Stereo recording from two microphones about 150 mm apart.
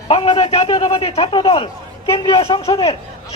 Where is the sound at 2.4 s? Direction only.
35° left (ahead or behind).